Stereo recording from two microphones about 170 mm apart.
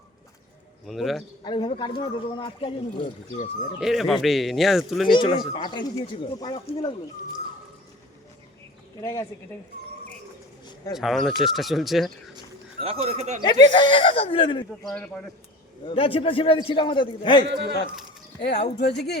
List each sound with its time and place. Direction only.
0.9 s speech: centre (ahead or behind)
1.5 s speech: 30° left (ahead or behind)
3.8 s speech: centre (ahead or behind)
5.4 s speech: 30° left (ahead or behind)
9.0 s a woman's voice: 20° left (ahead or behind)
10.9 s speech: centre (ahead or behind)
12.8 s speech: 35° right (ahead or behind)
13.4 s speech: 25° left (ahead or behind)
14.8 s speech: 5° left (ahead or behind)
15.9 s speech: 30° left (ahead or behind)
17.5 s speech: 85° right
18.3 s a woman's voice: 85° left